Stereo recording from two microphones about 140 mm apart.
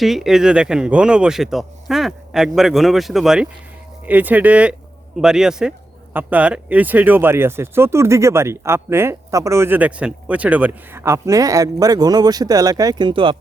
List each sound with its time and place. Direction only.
0.0 s a man's voice: centre (ahead or behind); by 13.3 s 35° right (ahead or behind)